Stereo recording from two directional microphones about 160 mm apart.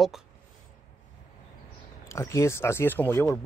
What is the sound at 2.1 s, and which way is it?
Speech, 15° left (ahead or behind).